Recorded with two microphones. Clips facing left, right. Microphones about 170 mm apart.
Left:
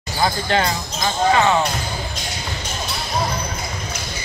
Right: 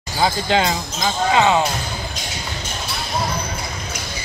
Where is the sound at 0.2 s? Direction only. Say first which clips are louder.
Right 1 dB; 15° right (ahead or behind).